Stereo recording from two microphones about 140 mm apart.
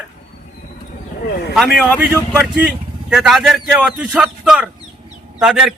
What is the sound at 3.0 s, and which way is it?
A man's voice, 5° right (ahead or behind).